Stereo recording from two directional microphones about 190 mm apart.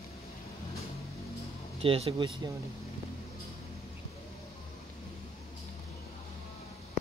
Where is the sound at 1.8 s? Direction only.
30° right (ahead or behind).